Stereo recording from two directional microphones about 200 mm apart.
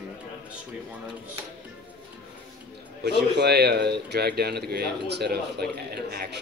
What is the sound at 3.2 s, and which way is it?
Speech, 55° right (ahead or behind).